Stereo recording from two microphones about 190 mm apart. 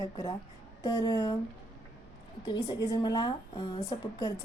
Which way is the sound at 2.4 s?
20° left (ahead or behind).